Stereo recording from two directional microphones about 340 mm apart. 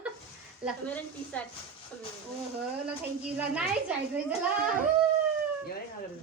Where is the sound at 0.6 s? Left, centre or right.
Centre.